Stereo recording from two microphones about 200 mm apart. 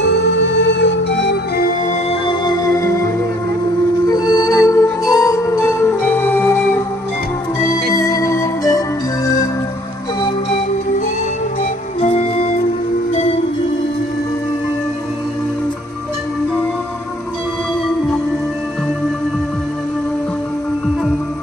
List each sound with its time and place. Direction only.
0.0 s music: 65° left (ahead or behind); by 2.0 s 45° left (ahead or behind)
2.0 s music: 20° left (ahead or behind)
4.1 s music: 20° left (ahead or behind)
7.9 s organ: 15° left (ahead or behind)
12.0 s music: 35° left (ahead or behind)